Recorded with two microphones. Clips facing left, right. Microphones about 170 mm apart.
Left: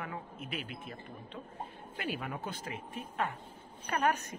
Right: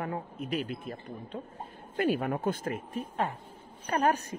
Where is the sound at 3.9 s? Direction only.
35° right (ahead or behind).